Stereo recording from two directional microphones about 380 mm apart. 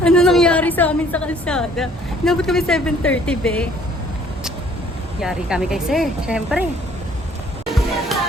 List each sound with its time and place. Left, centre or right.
0.0 s a woman's voice: centre
5.2 s a woman's voice: centre
8.1 s a sound: centre